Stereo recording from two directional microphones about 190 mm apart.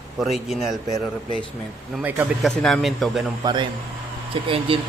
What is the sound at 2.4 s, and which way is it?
Speech, centre (ahead or behind).